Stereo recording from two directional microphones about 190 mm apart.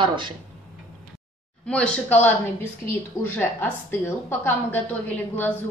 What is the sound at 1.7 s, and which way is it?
A woman's voice, 5° left (ahead or behind).